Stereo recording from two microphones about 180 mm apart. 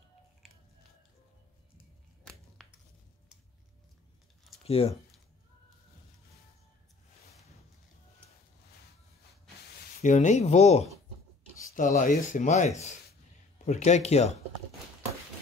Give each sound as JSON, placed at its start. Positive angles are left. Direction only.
{"t": 2.2, "sound": "a sound", "side_deg": 0}
{"t": 4.6, "sound": "speech", "side_deg": 35}
{"t": 10.0, "sound": "speech", "side_deg": 40}